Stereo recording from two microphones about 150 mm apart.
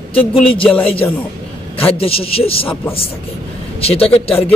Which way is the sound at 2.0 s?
40° left (ahead or behind).